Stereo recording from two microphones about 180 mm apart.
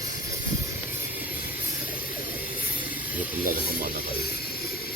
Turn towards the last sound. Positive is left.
turn(degrees=-50)  # may be behind; listen again after turning